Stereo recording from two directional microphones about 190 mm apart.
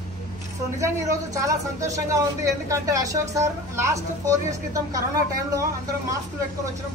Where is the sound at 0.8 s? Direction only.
15° right (ahead or behind).